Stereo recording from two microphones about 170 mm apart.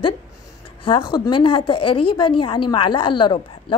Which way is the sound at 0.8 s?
25° left (ahead or behind).